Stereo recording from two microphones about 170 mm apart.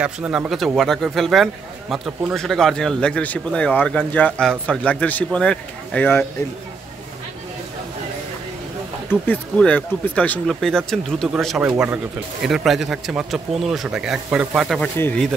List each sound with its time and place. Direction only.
0.0 s a man's voice: 5° right (ahead or behind); by 6.2 s 10° left (ahead or behind)
9.1 s a man's voice: 10° left (ahead or behind)
14.8 s speech: 10° left (ahead or behind)